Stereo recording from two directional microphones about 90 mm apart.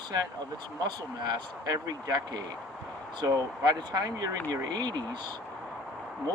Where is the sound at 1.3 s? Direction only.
45° right (ahead or behind).